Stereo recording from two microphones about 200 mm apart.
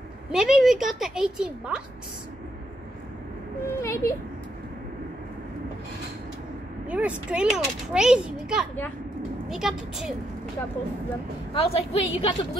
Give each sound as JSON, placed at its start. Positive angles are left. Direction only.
{"t": 0.3, "sound": "a child's voice", "side_deg": -5}
{"t": 3.6, "sound": "a sound", "side_deg": 15}
{"t": 6.9, "sound": "a child's voice", "side_deg": -5}
{"t": 11.5, "sound": "a woman's voice", "side_deg": 30}